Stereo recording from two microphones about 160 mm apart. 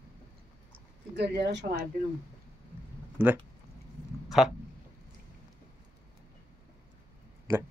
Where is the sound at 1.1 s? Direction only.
90° right.